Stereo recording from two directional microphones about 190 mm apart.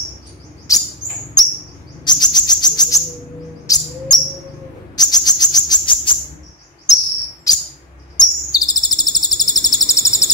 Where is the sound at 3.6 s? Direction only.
20° left (ahead or behind).